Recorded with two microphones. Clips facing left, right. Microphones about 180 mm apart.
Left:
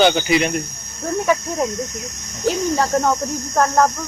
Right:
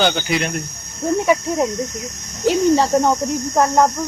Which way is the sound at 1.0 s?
25° right (ahead or behind).